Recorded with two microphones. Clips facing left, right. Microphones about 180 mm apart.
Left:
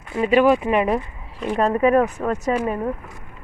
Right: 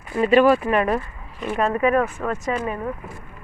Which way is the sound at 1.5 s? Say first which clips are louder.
Left 2 dB; 35° left (ahead or behind).